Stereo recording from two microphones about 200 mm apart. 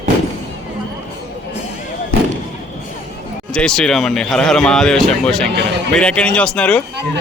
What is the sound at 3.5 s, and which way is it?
Speech, 5° left (ahead or behind).